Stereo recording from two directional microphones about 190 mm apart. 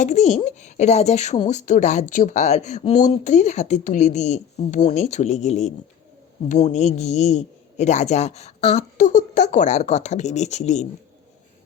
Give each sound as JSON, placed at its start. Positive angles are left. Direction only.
{"t": 0.0, "sound": "speech", "side_deg": 35}